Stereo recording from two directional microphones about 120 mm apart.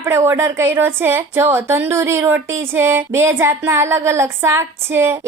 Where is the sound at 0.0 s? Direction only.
20° right (ahead or behind).